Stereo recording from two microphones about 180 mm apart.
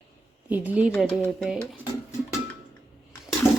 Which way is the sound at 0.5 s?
10° right (ahead or behind).